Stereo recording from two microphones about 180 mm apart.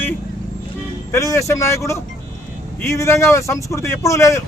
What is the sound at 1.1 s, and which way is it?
Speech, 15° left (ahead or behind).